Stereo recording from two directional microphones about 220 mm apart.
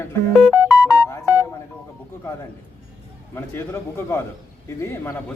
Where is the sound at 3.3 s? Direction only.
10° left (ahead or behind).